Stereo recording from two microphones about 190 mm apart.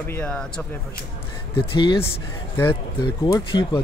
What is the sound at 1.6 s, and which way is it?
Speech, 25° left (ahead or behind).